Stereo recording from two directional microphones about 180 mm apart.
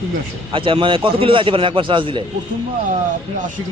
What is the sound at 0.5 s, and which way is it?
A man's voice, 30° right (ahead or behind).